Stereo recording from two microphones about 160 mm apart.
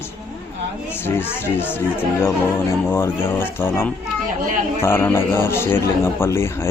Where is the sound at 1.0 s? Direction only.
15° left (ahead or behind).